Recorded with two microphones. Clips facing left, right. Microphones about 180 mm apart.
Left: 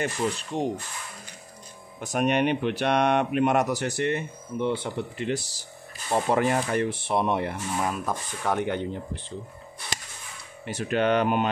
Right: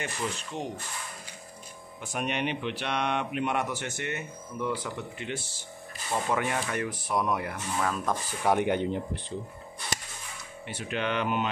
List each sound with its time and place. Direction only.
0.0 s speech: 35° left (ahead or behind)
2.0 s speech: 45° left (ahead or behind); by 7.5 s 30° left (ahead or behind)
7.8 s speech: 10° left (ahead or behind)
8.5 s speech: 15° right (ahead or behind)
10.7 s speech: 40° left (ahead or behind)